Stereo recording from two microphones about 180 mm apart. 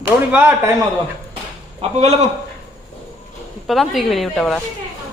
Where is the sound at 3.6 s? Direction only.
Centre (ahead or behind).